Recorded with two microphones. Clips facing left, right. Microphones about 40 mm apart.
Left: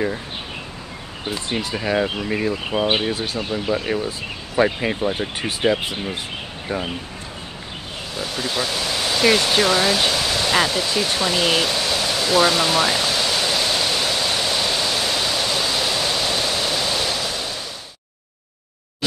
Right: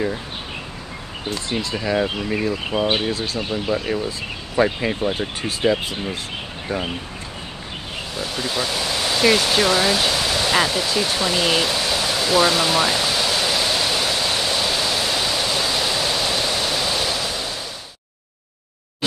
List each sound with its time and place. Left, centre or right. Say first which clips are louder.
1.7 s speech: even; left
2.5 s speech: even; centre
2.9 s speech: even; centre
4.8 s speech: even; centre
5.4 s speech: even; left
8.2 s waterfall: even; centre